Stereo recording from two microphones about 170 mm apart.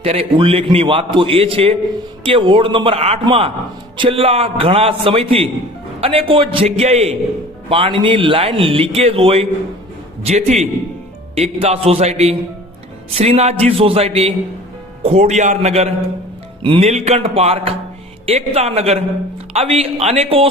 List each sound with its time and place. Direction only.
0.0 s a man's voice: 35° right (ahead or behind)